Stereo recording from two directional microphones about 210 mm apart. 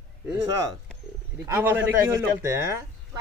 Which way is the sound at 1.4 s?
10° right (ahead or behind).